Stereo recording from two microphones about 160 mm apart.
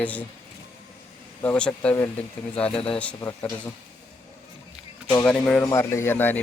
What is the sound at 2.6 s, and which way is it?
Speech, 35° left (ahead or behind).